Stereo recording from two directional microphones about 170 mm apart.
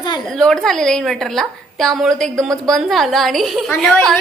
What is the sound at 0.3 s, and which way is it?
Speech, 5° left (ahead or behind).